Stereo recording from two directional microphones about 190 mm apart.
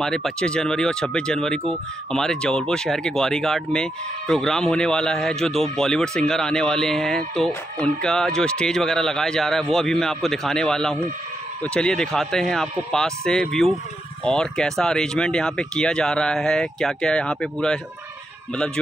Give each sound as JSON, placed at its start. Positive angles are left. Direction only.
{"t": 0.0, "sound": "speech", "side_deg": 5}